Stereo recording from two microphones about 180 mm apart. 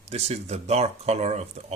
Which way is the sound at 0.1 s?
35° right (ahead or behind).